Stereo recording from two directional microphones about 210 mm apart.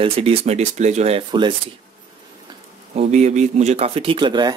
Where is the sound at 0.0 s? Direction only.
25° right (ahead or behind).